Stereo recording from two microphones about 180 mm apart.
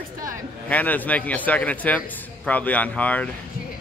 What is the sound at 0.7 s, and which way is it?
Speech, 10° left (ahead or behind).